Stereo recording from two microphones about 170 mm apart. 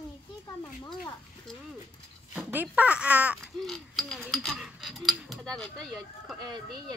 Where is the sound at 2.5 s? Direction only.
10° right (ahead or behind).